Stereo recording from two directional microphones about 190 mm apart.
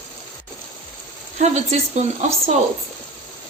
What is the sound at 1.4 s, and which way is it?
A woman's voice, 35° right (ahead or behind).